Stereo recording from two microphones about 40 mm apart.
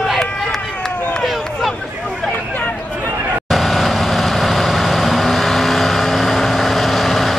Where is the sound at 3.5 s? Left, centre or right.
Centre.